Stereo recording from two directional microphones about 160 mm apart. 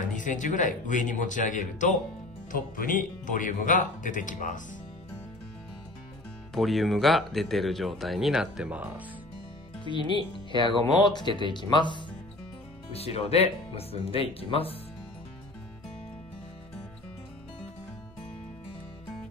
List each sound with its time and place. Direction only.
0.0 s speech: 55° left (ahead or behind)
6.5 s speech: centre (ahead or behind)
9.8 s speech: 30° left (ahead or behind)
11.1 s speech: 30° left (ahead or behind)
12.9 s speech: 40° left (ahead or behind)